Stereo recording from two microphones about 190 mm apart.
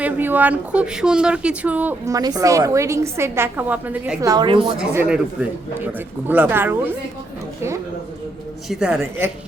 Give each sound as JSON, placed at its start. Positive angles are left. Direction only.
{"t": 0.0, "sound": "speech", "side_deg": -10}
{"t": 4.2, "sound": "a woman's voice", "side_deg": -20}
{"t": 4.9, "sound": "speech", "side_deg": -5}
{"t": 8.7, "sound": "a woman's voice", "side_deg": -5}